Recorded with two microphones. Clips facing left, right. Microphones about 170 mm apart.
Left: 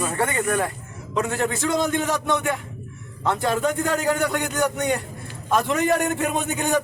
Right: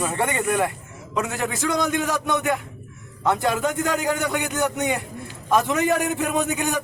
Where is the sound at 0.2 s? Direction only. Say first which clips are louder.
Even; 20° right (ahead or behind).